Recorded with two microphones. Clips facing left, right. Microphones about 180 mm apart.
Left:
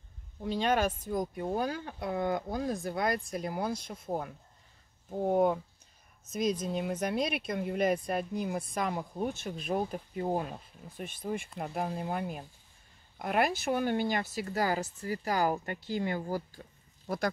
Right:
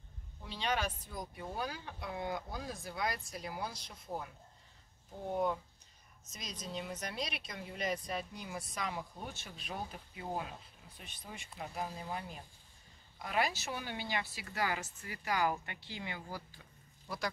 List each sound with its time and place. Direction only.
0.4 s speech: 50° left (ahead or behind)